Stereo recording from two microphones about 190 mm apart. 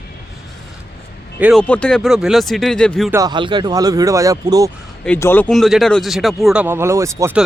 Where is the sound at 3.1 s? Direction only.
20° right (ahead or behind).